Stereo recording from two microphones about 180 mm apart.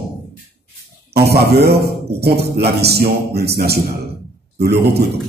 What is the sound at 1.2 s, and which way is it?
A man's voice, 60° right (ahead or behind).